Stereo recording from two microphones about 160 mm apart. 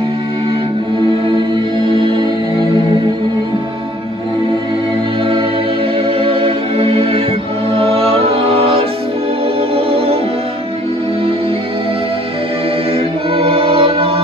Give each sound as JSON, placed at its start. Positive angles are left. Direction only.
{"t": 1.9, "sound": "music", "side_deg": -30}
{"t": 6.0, "sound": "music", "side_deg": -35}
{"t": 9.6, "sound": "organ", "side_deg": -35}
{"t": 12.9, "sound": "choir", "side_deg": -35}